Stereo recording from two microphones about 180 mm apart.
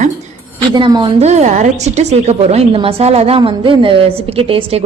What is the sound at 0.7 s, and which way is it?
Speech, 25° right (ahead or behind).